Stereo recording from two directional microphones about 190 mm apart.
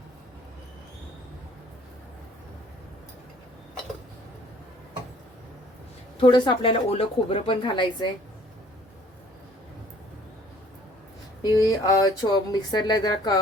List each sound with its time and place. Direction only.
6.1 s speech: 25° left (ahead or behind)
11.5 s speech: 20° left (ahead or behind)